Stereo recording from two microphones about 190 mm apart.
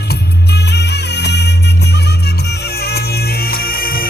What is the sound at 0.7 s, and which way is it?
Music, 60° left (ahead or behind).